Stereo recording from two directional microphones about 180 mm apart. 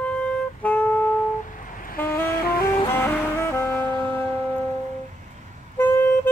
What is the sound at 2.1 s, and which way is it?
Music, 60° left (ahead or behind).